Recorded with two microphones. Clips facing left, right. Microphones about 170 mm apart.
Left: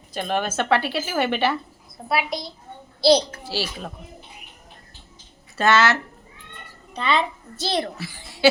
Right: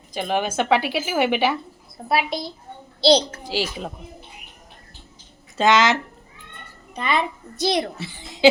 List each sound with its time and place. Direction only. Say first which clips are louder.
0.1 s a woman's voice: right 1 dB; 15° right (ahead or behind)
2.0 s a woman's voice: right 2 dB; 25° right (ahead or behind)
5.5 s a woman's voice: right 1 dB; 15° right (ahead or behind)